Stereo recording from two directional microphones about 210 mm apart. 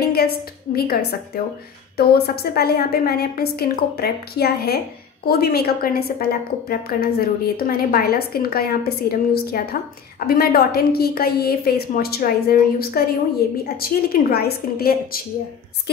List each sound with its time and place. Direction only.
0.1 s a woman's voice: 45° left (ahead or behind)